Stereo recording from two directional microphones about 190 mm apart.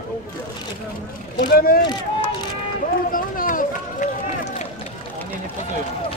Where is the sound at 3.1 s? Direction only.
45° left (ahead or behind).